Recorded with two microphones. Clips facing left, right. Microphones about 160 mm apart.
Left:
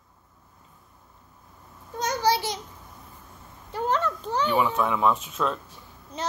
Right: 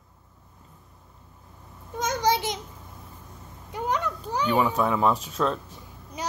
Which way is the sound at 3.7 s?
15° right (ahead or behind).